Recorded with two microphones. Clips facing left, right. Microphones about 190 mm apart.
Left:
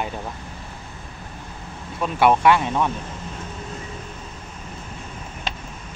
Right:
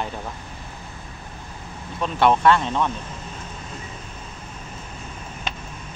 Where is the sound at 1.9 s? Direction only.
10° left (ahead or behind).